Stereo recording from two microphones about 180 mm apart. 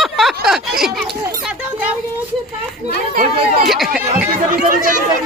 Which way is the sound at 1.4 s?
5° right (ahead or behind).